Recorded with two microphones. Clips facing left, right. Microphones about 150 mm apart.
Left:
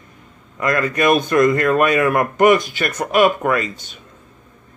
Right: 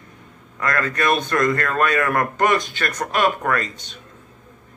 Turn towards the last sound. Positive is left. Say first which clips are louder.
# left 3 dB
turn(degrees=10)  # may be behind; listen again after turning